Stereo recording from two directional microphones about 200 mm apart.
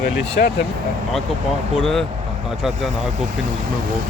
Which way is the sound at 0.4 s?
50° left (ahead or behind).